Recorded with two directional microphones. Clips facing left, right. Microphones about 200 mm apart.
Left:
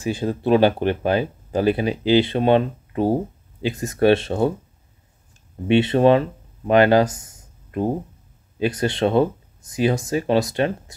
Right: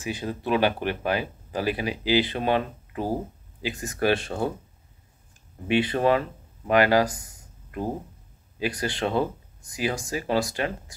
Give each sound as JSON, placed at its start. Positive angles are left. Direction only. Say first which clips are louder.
{"t": 0.0, "sound": "speech", "louder": "left 7 dB", "side_deg": 30}
{"t": 5.7, "sound": "speech", "louder": "left 7 dB", "side_deg": 25}
{"t": 8.5, "sound": "speech", "louder": "left 7 dB", "side_deg": 25}